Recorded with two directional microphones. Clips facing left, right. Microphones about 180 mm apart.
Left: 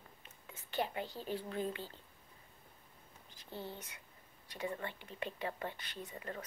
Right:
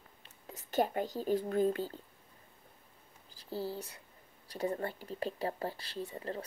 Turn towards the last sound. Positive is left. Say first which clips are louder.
# right 6 dB
turn(degrees=-30)  # may be behind; listen again after turning